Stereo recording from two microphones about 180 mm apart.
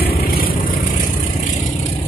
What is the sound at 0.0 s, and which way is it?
Vehicle, 55° left (ahead or behind).